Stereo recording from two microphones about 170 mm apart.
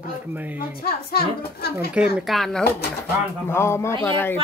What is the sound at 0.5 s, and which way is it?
A woman's voice, 65° left (ahead or behind).